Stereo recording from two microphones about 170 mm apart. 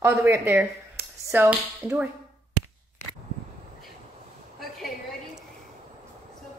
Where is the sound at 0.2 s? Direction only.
10° right (ahead or behind).